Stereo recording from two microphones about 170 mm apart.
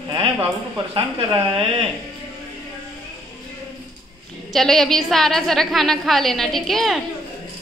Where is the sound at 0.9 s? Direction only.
35° right (ahead or behind).